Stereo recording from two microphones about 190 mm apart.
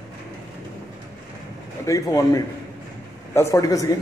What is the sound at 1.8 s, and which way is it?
A man's voice, 15° left (ahead or behind).